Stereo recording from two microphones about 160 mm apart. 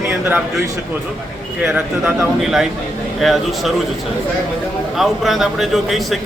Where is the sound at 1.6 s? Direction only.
5° right (ahead or behind).